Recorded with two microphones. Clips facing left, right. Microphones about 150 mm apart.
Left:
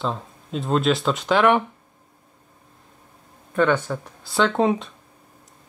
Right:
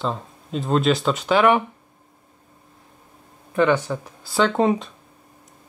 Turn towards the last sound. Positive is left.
turn(degrees=0)  # may be behind; listen again after turning